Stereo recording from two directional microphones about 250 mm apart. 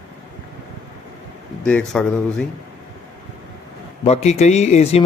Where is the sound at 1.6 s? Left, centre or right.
Centre.